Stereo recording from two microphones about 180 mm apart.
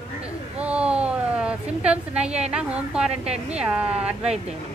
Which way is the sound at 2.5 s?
5° right (ahead or behind).